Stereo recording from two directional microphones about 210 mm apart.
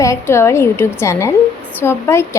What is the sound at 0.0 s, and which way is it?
A woman's voice, 15° left (ahead or behind).